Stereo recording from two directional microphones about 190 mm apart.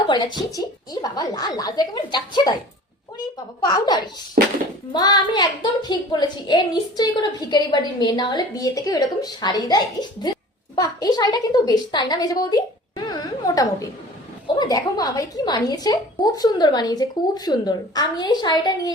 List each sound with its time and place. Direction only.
0.1 s a woman's voice: 25° left (ahead or behind)
3.6 s a woman's voice: 20° left (ahead or behind)